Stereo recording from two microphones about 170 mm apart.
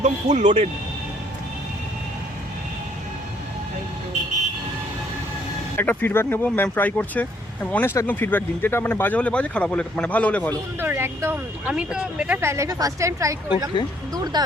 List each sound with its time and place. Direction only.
0.0 s speech: 45° right (ahead or behind)
5.7 s speech: 10° left (ahead or behind)
10.8 s speech: 15° right (ahead or behind)
14.3 s speech: 25° right (ahead or behind)